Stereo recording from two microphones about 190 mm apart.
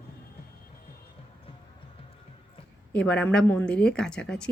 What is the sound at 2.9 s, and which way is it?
Speech, 5° left (ahead or behind).